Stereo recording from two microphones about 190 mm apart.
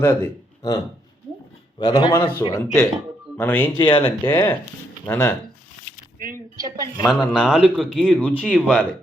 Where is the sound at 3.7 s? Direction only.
25° left (ahead or behind).